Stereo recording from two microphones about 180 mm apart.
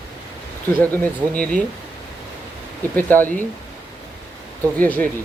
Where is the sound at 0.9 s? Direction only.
10° left (ahead or behind).